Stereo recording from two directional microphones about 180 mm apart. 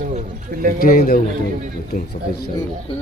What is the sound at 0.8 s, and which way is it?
Speech, 50° left (ahead or behind).